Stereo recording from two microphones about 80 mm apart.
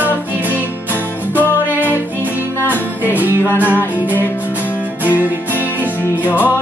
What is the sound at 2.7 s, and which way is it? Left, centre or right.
Music, right.